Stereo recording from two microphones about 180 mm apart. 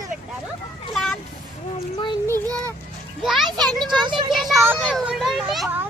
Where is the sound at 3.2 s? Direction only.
Centre (ahead or behind).